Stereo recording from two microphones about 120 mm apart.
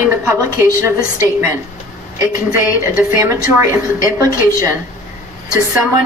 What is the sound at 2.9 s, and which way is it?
A woman's voice, 25° right (ahead or behind).